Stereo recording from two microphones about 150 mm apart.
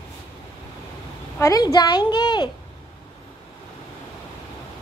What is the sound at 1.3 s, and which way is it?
A woman's voice, 25° left (ahead or behind).